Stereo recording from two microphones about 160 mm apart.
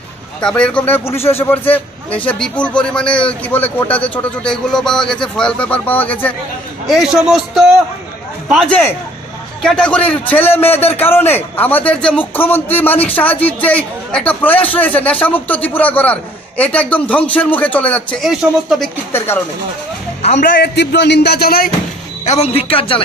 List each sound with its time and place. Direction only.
0.4 s a man's voice: 5° left (ahead or behind)
6.9 s a man's voice: centre (ahead or behind)
19.1 s a man's voice: 15° left (ahead or behind)
20.3 s a man's voice: 80° left
22.2 s a man's voice: 45° left (ahead or behind)